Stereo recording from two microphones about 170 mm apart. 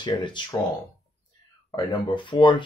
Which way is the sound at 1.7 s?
25° left (ahead or behind).